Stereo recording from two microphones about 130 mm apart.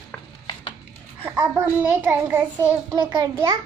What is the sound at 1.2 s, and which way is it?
A child's voice, 20° right (ahead or behind).